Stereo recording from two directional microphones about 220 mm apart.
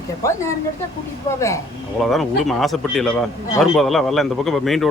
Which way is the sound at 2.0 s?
Centre (ahead or behind).